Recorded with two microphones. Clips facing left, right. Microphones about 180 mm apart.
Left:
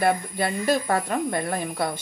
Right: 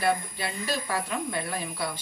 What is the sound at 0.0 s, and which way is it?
Speech, 55° left (ahead or behind).